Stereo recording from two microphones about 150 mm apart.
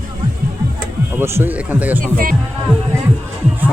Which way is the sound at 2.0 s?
70° right (ahead or behind).